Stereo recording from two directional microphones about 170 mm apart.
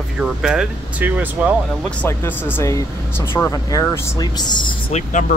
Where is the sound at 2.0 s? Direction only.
15° left (ahead or behind).